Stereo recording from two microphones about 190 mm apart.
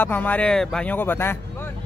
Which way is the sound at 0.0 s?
10° left (ahead or behind).